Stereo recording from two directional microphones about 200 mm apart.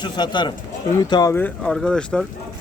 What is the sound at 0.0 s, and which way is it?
Speech, 20° left (ahead or behind).